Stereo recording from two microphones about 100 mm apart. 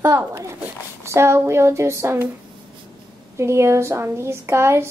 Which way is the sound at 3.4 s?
30° right (ahead or behind).